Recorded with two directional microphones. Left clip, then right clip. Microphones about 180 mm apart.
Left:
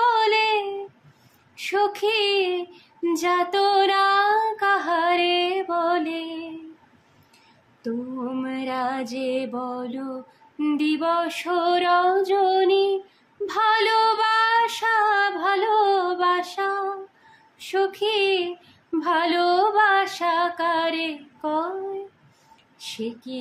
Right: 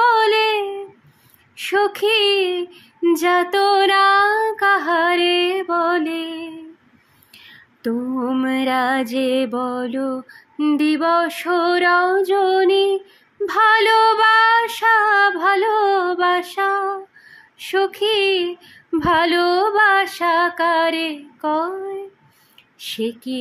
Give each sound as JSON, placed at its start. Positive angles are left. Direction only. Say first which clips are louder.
{"t": 0.0, "sound": "child singing", "louder": "right 5 dB", "side_deg": -30}
{"t": 1.6, "sound": "female singing", "louder": "right 4 dB", "side_deg": -35}
{"t": 8.2, "sound": "female singing", "louder": "right 9 dB", "side_deg": -45}
{"t": 22.8, "sound": "speech", "louder": "right 7 dB", "side_deg": -40}